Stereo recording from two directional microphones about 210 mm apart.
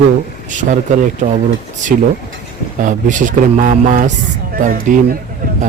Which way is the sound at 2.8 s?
35° right (ahead or behind).